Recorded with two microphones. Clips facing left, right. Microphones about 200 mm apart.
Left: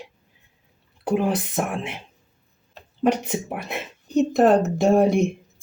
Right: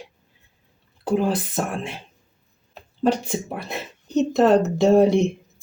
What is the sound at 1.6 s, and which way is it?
Speech, 20° left (ahead or behind).